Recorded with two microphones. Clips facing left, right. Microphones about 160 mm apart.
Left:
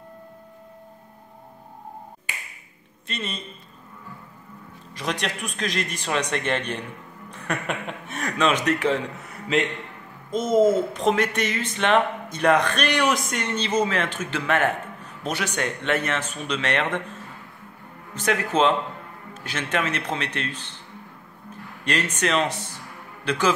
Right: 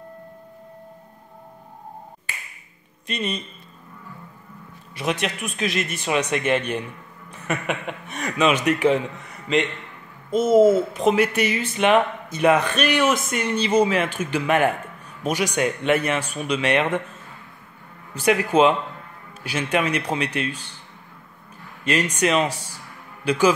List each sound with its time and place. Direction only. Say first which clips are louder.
3.1 s speech: right 5 dB; 15° right (ahead or behind)
4.9 s speech: right 3 dB; 5° right (ahead or behind)
10.3 s speech: right 4 dB; 10° right (ahead or behind)
18.1 s speech: right 5 dB; 10° right (ahead or behind)
21.8 s a man's voice: right 4 dB; 10° right (ahead or behind)